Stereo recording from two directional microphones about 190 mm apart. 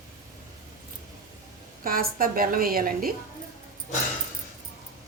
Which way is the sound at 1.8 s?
50° right (ahead or behind).